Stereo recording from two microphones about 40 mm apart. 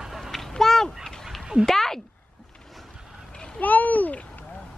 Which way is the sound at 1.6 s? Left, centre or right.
Centre.